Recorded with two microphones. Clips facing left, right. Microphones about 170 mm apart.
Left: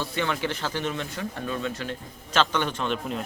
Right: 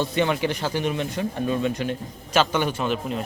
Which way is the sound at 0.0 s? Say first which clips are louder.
Right 5 dB; 20° right (ahead or behind).